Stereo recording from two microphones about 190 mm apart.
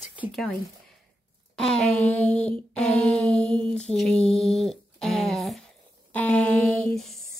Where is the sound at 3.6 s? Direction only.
30° right (ahead or behind).